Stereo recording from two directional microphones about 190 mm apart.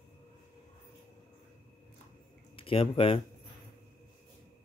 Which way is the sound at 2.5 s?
30° left (ahead or behind).